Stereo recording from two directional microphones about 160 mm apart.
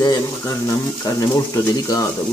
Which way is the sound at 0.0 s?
20° left (ahead or behind).